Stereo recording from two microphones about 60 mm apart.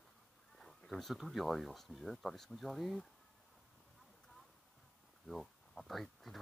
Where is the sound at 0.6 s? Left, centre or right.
Centre.